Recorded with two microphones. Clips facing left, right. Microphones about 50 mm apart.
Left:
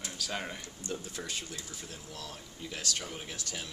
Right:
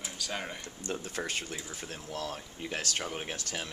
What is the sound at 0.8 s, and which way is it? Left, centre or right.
Speech, right.